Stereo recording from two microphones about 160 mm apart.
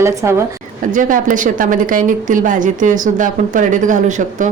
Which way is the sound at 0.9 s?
55° right (ahead or behind).